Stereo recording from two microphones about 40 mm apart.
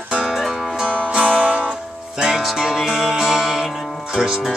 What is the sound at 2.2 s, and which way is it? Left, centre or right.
Music, centre.